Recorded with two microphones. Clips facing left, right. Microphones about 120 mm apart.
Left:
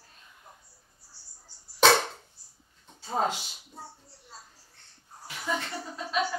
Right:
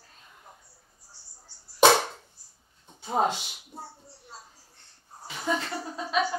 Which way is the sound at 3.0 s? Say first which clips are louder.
Right 3 dB; 20° right (ahead or behind).